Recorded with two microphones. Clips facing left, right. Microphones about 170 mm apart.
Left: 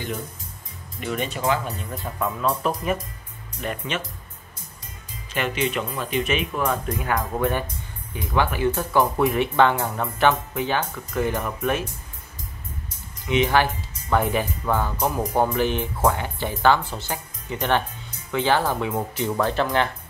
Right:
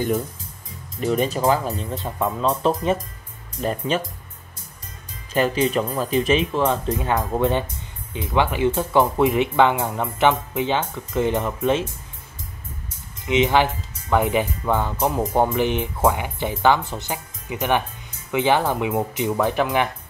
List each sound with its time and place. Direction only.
1.0 s speech: 35° right (ahead or behind)
2.0 s speech: 25° right (ahead or behind)
5.3 s speech: 35° right (ahead or behind)
13.2 s speech: 20° right (ahead or behind)